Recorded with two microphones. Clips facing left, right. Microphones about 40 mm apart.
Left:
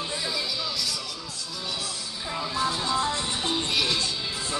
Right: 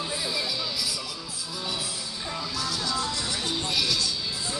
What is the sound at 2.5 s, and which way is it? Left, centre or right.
Speech, left.